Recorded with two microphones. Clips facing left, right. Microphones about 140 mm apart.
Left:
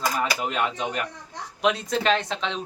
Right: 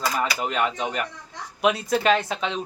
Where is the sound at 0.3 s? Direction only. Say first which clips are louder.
Right 1 dB; 5° left (ahead or behind).